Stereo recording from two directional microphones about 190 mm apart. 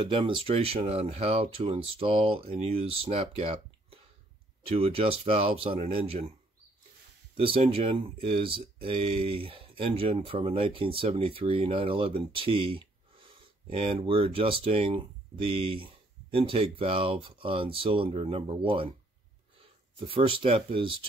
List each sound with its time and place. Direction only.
0.0 s speech: 25° right (ahead or behind)
7.3 s speech: 30° right (ahead or behind)
20.1 s speech: 30° right (ahead or behind)